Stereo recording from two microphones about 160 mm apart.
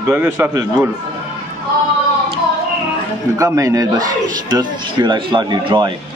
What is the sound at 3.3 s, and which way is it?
A man's voice, 20° right (ahead or behind).